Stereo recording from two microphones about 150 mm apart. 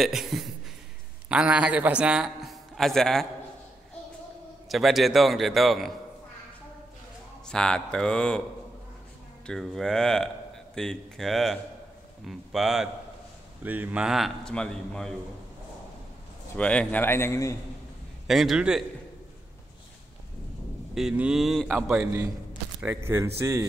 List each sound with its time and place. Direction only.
0.0 s speech: centre (ahead or behind)
4.6 s speech: centre (ahead or behind)
7.4 s speech: 5° left (ahead or behind)
9.5 s speech: centre (ahead or behind)
13.6 s speech: 10° right (ahead or behind); by 15.1 s 5° left (ahead or behind)
16.5 s a man's voice: 10° left (ahead or behind)
18.2 s speech: centre (ahead or behind)
20.9 s speech: 5° right (ahead or behind)
22.8 s speech: 15° right (ahead or behind)